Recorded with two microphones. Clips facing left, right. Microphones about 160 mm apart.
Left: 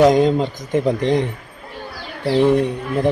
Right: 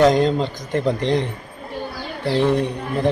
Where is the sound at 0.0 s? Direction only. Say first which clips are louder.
Left 2 dB; 5° left (ahead or behind).